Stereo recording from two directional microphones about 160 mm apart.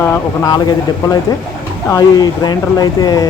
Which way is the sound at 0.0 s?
20° left (ahead or behind).